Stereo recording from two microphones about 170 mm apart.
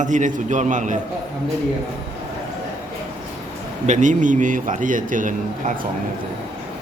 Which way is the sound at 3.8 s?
45° right (ahead or behind).